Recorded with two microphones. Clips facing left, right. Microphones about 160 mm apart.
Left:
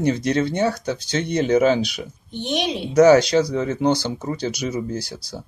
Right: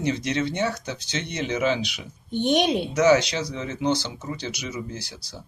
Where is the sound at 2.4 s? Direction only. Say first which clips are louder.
Right 3 dB; 50° right (ahead or behind).